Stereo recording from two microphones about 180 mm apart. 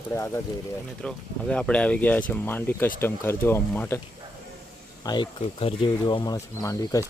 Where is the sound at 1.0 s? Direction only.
5° left (ahead or behind).